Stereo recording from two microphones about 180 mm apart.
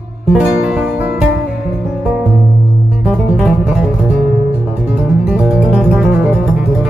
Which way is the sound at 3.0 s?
5° right (ahead or behind).